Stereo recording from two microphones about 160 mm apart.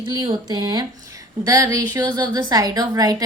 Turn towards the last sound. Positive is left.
turn(degrees=-20)  # may be behind; listen again after turning